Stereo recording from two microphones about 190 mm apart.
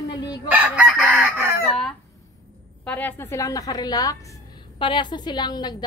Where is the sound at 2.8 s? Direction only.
10° left (ahead or behind).